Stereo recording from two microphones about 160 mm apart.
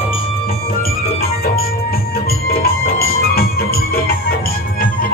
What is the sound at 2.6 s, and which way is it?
Music, 70° left (ahead or behind).